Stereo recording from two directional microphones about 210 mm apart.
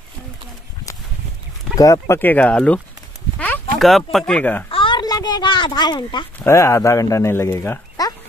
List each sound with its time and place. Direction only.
1.8 s speech: 15° left (ahead or behind)
3.3 s a sound: 10° left (ahead or behind)
3.7 s speech: centre (ahead or behind)
4.6 s a child's voice: 25° left (ahead or behind)